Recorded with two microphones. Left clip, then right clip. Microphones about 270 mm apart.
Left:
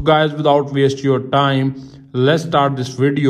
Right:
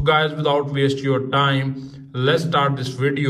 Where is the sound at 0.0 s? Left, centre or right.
Left.